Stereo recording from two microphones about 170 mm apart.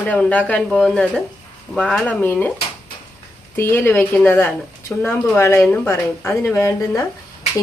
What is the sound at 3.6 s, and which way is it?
Speech, 15° left (ahead or behind).